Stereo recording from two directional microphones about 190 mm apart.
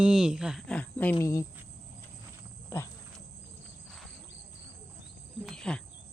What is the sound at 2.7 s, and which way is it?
Wild animals, 15° left (ahead or behind).